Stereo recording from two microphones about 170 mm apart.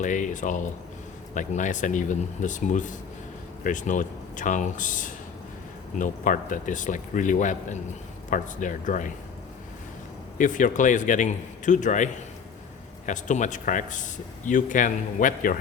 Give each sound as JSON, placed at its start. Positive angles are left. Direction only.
{"t": 0.0, "sound": "speech", "side_deg": 50}
{"t": 10.3, "sound": "speech", "side_deg": 50}
{"t": 13.1, "sound": "speech", "side_deg": 45}